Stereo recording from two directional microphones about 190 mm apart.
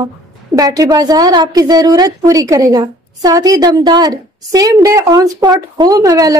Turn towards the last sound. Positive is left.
turn(degrees=-20)  # may be behind; listen again after turning